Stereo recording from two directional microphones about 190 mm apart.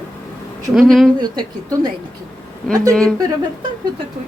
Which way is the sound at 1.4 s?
20° right (ahead or behind).